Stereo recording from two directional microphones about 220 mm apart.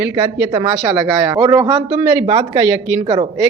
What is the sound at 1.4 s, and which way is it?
Speech, 15° right (ahead or behind).